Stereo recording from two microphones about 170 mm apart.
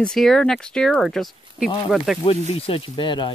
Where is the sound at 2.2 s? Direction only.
35° left (ahead or behind).